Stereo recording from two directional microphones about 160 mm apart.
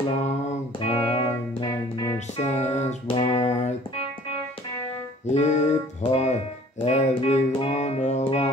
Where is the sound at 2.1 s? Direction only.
45° left (ahead or behind).